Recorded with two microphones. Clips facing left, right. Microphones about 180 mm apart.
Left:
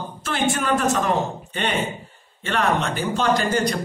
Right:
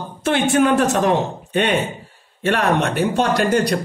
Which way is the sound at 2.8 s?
65° right (ahead or behind).